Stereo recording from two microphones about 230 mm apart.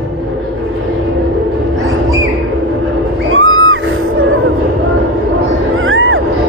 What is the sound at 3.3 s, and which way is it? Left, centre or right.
Music, right.